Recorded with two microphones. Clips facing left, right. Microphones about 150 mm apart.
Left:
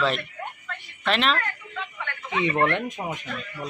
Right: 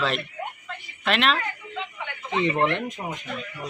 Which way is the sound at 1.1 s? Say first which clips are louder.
Even; centre (ahead or behind).